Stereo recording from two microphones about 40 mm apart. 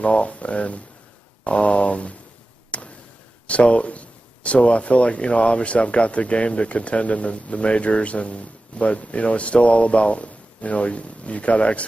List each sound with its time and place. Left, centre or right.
0.0 s speech: left
2.7 s a sound: left
3.4 s speech: left